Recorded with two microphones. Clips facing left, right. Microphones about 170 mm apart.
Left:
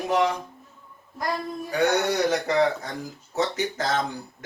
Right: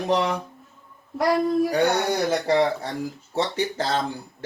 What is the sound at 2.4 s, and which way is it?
Speech, 30° right (ahead or behind).